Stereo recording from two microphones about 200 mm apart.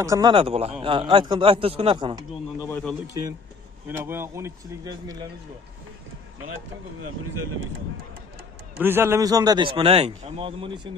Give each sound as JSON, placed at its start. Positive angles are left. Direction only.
{"t": 0.0, "sound": "a man's voice", "side_deg": -20}
{"t": 2.7, "sound": "a man's voice", "side_deg": 5}
{"t": 3.9, "sound": "a man's voice", "side_deg": -10}
{"t": 8.7, "sound": "a man's voice", "side_deg": -10}